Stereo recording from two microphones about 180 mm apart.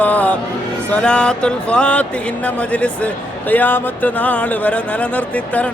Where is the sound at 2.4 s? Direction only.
5° left (ahead or behind).